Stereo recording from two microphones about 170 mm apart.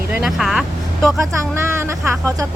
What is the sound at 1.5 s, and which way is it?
Speech, 15° right (ahead or behind).